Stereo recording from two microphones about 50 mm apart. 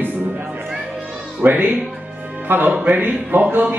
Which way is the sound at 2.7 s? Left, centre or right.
Right.